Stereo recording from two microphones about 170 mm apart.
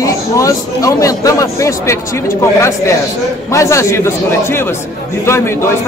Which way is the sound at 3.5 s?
15° left (ahead or behind).